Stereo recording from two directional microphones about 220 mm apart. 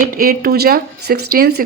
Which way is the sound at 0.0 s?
40° right (ahead or behind).